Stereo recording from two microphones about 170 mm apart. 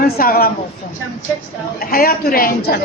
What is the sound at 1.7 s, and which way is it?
A man's voice, 60° left (ahead or behind).